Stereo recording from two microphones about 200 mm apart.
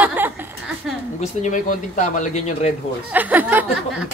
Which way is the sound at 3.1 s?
10° right (ahead or behind).